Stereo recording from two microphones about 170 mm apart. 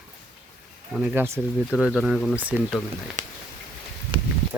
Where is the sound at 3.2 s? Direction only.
45° right (ahead or behind).